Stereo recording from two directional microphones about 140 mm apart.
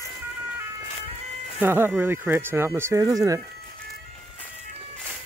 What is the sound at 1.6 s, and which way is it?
Speech, 15° right (ahead or behind).